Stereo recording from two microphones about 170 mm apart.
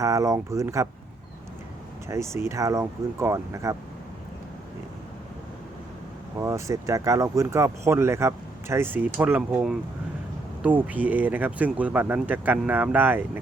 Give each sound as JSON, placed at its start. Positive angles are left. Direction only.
{"t": 0.0, "sound": "speech", "side_deg": -20}
{"t": 2.0, "sound": "speech", "side_deg": -15}
{"t": 6.4, "sound": "speech", "side_deg": -15}